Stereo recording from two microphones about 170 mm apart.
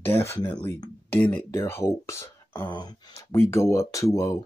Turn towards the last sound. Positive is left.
turn(degrees=20)  # may be behind; listen again after turning